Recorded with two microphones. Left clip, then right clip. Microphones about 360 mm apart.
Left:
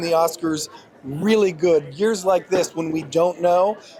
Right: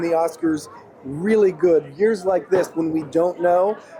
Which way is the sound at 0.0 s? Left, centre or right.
Left.